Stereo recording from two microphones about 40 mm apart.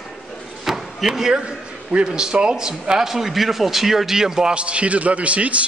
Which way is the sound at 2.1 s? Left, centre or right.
Right.